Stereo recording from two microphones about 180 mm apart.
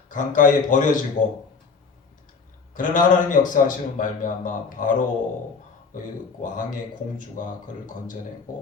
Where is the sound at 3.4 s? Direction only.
45° left (ahead or behind).